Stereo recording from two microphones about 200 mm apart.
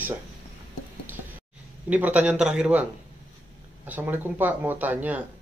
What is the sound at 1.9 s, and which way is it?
Speech, 5° right (ahead or behind).